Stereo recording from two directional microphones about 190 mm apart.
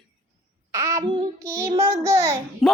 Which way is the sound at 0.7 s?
15° right (ahead or behind).